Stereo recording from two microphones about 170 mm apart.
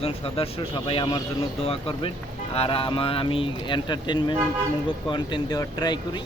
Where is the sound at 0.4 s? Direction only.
35° left (ahead or behind).